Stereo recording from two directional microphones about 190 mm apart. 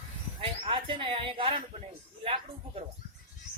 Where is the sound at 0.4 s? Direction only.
25° right (ahead or behind).